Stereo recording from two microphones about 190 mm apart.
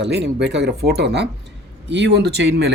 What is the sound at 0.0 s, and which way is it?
Speech, 65° right (ahead or behind).